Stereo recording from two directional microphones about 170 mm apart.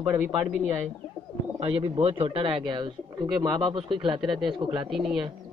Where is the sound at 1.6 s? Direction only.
35° right (ahead or behind).